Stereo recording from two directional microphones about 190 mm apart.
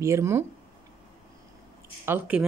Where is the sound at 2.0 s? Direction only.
10° right (ahead or behind).